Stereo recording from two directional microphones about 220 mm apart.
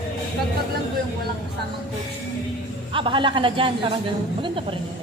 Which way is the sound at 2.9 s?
25° right (ahead or behind).